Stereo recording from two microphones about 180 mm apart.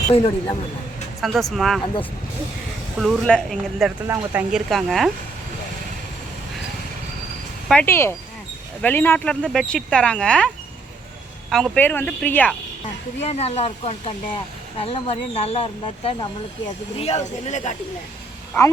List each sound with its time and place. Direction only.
0.1 s speech: 30° left (ahead or behind)
1.2 s speech: centre (ahead or behind)
4.0 s speech: 15° right (ahead or behind)
4.7 s speech: centre (ahead or behind)
7.7 s a woman's voice: 10° left (ahead or behind)
13.2 s speech: 35° left (ahead or behind)